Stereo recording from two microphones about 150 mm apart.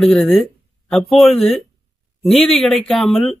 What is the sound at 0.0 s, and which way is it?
A man's voice, centre (ahead or behind).